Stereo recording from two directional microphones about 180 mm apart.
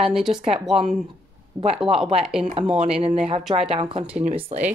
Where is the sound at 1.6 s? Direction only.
10° right (ahead or behind).